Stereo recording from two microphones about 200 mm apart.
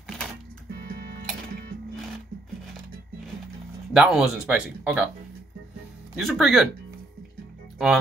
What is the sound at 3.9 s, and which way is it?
Speech, 5° right (ahead or behind).